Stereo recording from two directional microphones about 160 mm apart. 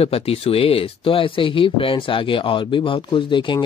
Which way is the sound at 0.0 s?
40° left (ahead or behind).